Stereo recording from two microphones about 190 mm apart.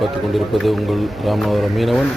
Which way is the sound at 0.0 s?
Centre (ahead or behind).